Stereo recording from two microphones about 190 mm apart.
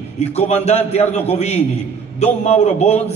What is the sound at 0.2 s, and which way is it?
A man's voice, 35° left (ahead or behind).